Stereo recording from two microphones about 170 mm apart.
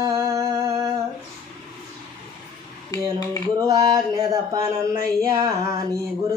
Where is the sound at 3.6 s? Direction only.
20° right (ahead or behind).